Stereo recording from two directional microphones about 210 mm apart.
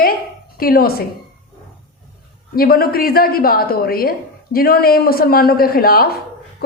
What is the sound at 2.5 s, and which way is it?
A woman's voice, 45° left (ahead or behind).